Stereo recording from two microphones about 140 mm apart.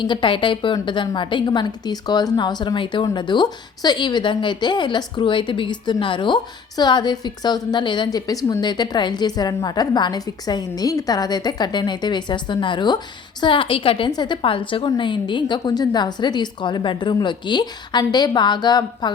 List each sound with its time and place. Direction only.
0.0 s a woman's voice: 35° left (ahead or behind)